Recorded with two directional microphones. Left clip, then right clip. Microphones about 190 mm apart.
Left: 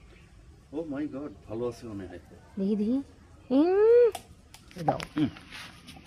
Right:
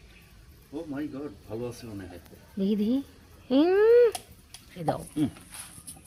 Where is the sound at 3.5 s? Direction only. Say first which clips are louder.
Right 1 dB; centre (ahead or behind).